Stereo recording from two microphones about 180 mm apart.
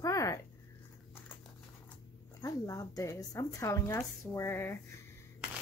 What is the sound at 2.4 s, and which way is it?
Speech, 20° left (ahead or behind).